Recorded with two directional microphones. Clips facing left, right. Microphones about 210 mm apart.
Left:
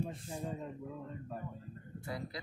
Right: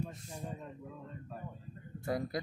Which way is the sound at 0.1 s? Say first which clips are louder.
Left 3 dB; 30° left (ahead or behind).